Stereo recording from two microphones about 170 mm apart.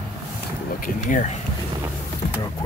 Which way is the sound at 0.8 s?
50° left (ahead or behind).